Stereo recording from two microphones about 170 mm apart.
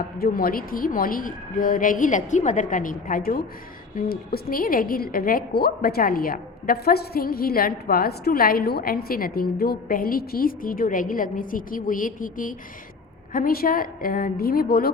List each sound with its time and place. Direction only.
0.2 s a woman's voice: 60° left (ahead or behind)